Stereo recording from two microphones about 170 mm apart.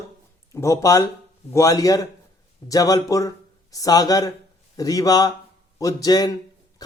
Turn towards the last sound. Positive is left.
turn(degrees=20)  # may be behind; listen again after turning